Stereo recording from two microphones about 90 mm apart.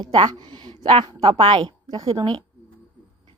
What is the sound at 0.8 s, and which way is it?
Speech, 90° right.